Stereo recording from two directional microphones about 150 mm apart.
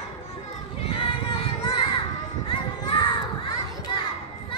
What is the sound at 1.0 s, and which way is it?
Child singing, 35° left (ahead or behind).